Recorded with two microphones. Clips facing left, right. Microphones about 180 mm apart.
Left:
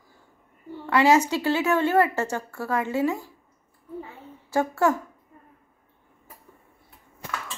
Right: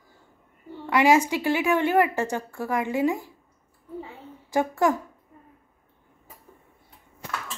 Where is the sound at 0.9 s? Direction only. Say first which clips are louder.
Even; 15° right (ahead or behind).